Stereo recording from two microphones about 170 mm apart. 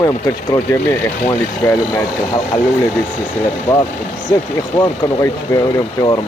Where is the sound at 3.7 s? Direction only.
10° left (ahead or behind).